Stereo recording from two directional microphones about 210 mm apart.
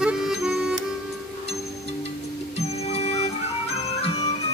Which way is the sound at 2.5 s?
30° left (ahead or behind).